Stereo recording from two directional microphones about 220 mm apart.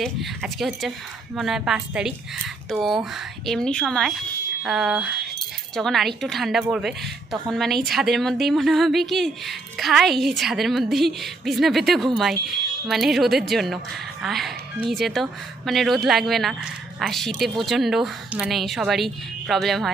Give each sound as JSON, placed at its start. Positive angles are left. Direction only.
{"t": 0.0, "sound": "a woman's voice", "side_deg": 0}